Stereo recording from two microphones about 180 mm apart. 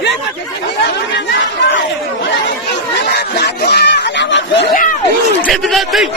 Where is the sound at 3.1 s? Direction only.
65° left (ahead or behind); by 4.7 s 85° left.